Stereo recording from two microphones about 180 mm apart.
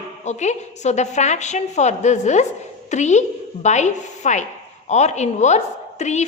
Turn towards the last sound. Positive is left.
turn(degrees=40)  # may be behind; listen again after turning